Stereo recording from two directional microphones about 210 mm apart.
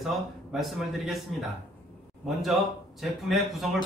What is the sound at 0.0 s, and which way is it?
A man's voice, centre (ahead or behind).